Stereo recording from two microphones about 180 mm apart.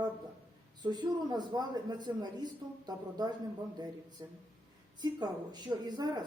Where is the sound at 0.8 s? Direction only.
25° right (ahead or behind).